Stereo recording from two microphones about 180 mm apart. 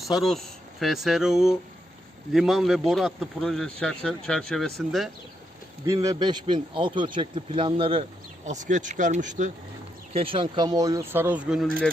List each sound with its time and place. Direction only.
0.0 s a man's voice: centre (ahead or behind)
5.8 s speech: 20° right (ahead or behind)
8.4 s speech: 40° right (ahead or behind)
10.1 s speech: 30° right (ahead or behind); by 11.7 s centre (ahead or behind)